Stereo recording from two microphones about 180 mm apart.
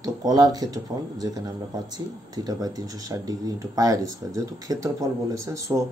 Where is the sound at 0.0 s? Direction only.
20° right (ahead or behind).